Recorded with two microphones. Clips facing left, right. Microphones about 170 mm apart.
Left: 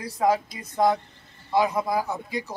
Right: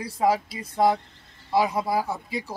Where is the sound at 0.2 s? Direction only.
5° right (ahead or behind).